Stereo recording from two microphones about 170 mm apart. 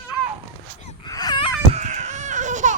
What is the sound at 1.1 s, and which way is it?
Baby cry, 25° left (ahead or behind).